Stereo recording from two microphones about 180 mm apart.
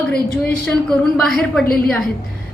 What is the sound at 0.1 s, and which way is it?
Speech, 60° left (ahead or behind).